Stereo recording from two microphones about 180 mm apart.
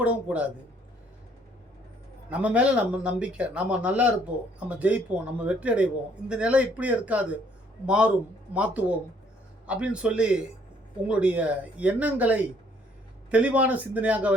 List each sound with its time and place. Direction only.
0.0 s a man's voice: 5° right (ahead or behind)
2.3 s a man's voice: 5° right (ahead or behind)